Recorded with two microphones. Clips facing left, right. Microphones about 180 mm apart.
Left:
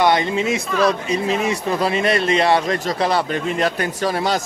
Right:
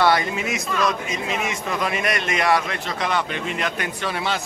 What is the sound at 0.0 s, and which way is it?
Speech, 25° left (ahead or behind).